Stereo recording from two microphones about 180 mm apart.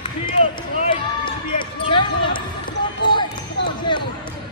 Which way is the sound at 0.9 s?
25° left (ahead or behind).